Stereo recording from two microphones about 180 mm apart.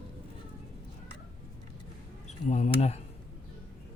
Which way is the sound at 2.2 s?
40° left (ahead or behind).